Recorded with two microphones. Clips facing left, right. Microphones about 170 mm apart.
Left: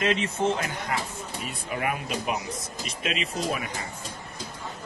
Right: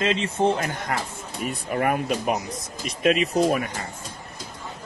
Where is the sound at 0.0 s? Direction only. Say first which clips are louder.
Right 3 dB; 30° right (ahead or behind).